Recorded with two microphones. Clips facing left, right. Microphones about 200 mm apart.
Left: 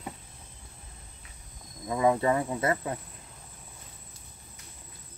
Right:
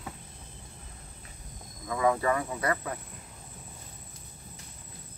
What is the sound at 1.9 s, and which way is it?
Speech, 25° left (ahead or behind).